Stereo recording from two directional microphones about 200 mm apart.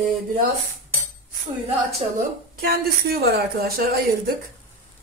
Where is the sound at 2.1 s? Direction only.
50° right (ahead or behind).